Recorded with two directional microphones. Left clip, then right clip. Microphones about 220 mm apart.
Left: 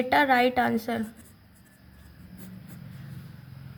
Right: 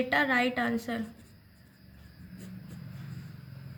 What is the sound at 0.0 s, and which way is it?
Speech, 35° left (ahead or behind).